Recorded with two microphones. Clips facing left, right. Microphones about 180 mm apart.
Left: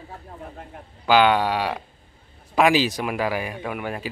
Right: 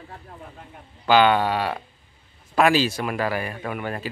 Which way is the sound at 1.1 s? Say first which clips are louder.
Even; 10° left (ahead or behind).